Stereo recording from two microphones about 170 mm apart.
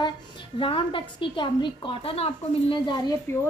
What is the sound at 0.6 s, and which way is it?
A woman's voice, 30° left (ahead or behind).